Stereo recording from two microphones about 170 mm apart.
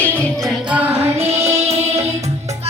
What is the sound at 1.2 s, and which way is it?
Music, 40° right (ahead or behind).